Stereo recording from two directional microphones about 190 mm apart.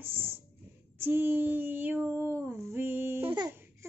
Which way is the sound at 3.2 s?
25° right (ahead or behind).